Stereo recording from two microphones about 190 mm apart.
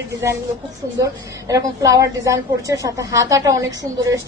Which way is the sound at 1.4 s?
15° right (ahead or behind).